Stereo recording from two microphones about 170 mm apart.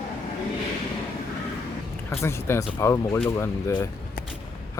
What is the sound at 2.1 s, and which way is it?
Speech, 15° left (ahead or behind).